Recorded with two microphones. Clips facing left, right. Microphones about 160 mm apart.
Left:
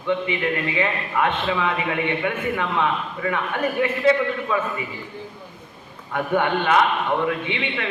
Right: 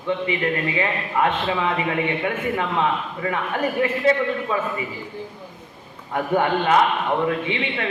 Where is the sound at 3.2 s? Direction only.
35° right (ahead or behind).